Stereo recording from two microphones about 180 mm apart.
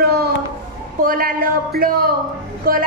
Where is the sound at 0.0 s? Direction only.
65° right (ahead or behind).